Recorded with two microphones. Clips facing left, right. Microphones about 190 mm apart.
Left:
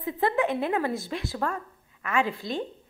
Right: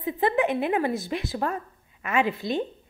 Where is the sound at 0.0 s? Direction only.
15° right (ahead or behind).